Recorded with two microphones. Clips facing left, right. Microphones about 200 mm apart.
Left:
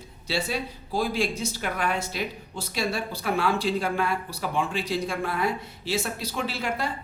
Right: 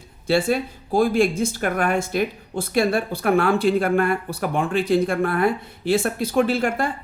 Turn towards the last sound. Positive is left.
turn(degrees=-50)  # may be behind; listen again after turning